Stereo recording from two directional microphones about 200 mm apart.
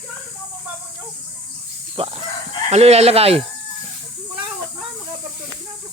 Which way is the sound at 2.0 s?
30° right (ahead or behind).